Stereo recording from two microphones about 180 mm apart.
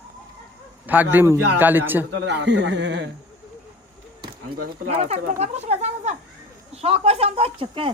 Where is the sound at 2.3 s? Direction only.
70° right (ahead or behind).